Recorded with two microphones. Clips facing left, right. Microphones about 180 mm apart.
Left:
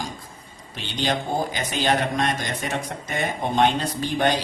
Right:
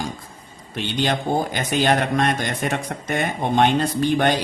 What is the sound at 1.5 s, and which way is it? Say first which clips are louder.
A man's voice: right 3 dB; 55° right (ahead or behind).